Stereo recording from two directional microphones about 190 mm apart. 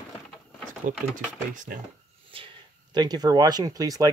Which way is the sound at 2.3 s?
25° right (ahead or behind).